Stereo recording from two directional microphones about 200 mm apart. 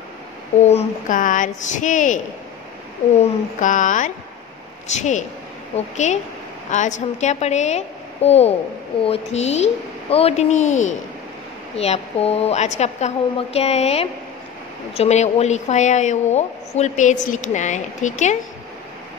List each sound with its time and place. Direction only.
0.7 s a woman's voice: 35° left (ahead or behind)
3.2 s a woman's voice: 40° left (ahead or behind)